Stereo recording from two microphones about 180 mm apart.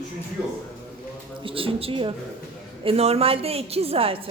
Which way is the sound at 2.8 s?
35° right (ahead or behind).